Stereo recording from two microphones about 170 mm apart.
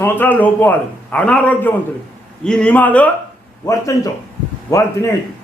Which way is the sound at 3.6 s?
20° left (ahead or behind).